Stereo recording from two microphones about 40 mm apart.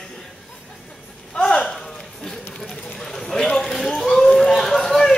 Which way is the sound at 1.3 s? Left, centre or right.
Centre.